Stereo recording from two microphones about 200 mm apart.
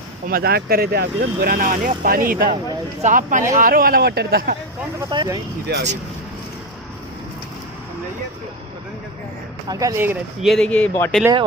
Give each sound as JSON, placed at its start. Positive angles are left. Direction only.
{"t": 0.3, "sound": "speech", "side_deg": -50}
{"t": 5.1, "sound": "speech", "side_deg": -20}
{"t": 5.6, "sound": "speech", "side_deg": -60}
{"t": 9.6, "sound": "speech", "side_deg": -15}
{"t": 10.4, "sound": "speech", "side_deg": 0}